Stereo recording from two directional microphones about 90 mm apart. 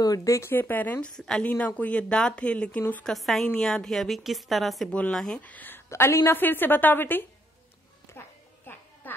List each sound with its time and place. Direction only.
0.0 s a woman's voice: 40° left (ahead or behind); by 1.1 s 20° left (ahead or behind)
1.1 s a woman's voice: 5° left (ahead or behind)
3.1 s a woman's voice: centre (ahead or behind)
5.4 s a woman's voice: 20° left (ahead or behind)
5.9 s a woman's voice: 30° left (ahead or behind)
8.2 s music: 25° left (ahead or behind)